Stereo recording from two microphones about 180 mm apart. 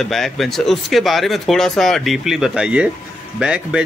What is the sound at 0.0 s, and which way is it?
Speech, centre (ahead or behind).